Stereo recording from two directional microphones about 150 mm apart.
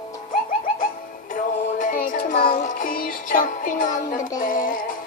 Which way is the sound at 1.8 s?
60° left (ahead or behind).